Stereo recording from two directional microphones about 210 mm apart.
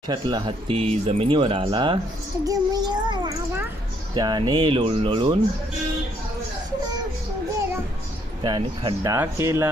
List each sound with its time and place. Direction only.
0.1 s a child's voice: 20° right (ahead or behind)
8.4 s speech: 20° right (ahead or behind)